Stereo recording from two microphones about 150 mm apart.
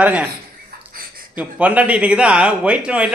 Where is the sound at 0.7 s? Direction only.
85° right.